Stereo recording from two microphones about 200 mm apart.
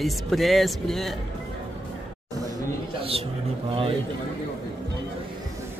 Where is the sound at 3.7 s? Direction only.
30° right (ahead or behind).